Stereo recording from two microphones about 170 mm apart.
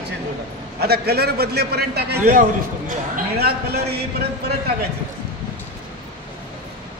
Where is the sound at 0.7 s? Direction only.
70° right (ahead or behind).